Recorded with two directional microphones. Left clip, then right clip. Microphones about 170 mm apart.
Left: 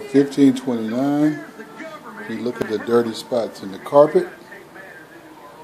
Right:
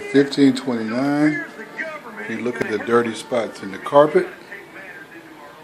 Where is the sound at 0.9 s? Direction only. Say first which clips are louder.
Even; 10° right (ahead or behind).